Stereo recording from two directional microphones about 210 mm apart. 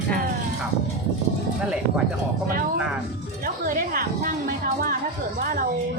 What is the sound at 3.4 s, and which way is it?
Music, 45° right (ahead or behind).